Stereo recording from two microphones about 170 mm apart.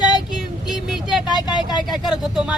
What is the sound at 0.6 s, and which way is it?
Speech, centre (ahead or behind).